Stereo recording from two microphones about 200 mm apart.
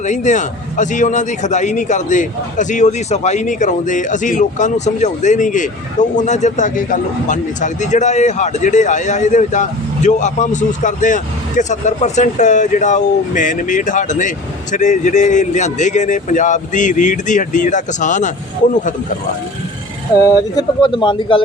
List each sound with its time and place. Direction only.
0.0 s a man's voice: 35° left (ahead or behind)
20.2 s speech: 20° left (ahead or behind)